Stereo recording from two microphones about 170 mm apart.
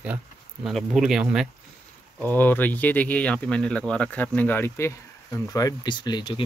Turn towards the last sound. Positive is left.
turn(degrees=25)  # may be behind; listen again after turning